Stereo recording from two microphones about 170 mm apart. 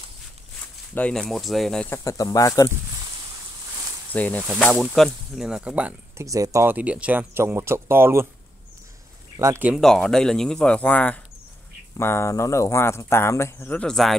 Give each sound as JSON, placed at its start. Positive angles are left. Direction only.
{"t": 0.9, "sound": "speech", "side_deg": 5}
{"t": 2.0, "sound": "speech", "side_deg": 20}
{"t": 4.1, "sound": "speech", "side_deg": 10}
{"t": 6.2, "sound": "speech", "side_deg": -20}
{"t": 9.4, "sound": "speech", "side_deg": -10}
{"t": 9.8, "sound": "speech", "side_deg": 0}